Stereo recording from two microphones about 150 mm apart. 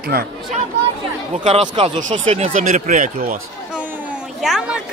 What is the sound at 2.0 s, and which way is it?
Speech, 50° right (ahead or behind).